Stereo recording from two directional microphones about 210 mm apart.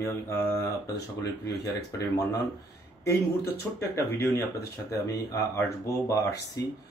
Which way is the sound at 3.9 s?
10° left (ahead or behind).